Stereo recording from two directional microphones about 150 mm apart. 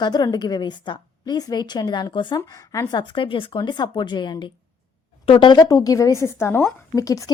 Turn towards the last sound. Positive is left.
turn(degrees=20)  # may be behind; listen again after turning